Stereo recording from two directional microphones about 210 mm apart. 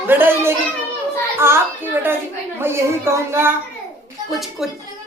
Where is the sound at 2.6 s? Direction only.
10° right (ahead or behind).